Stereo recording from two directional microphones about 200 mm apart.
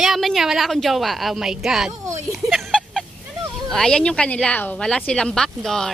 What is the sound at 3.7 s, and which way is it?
Speech, 5° left (ahead or behind).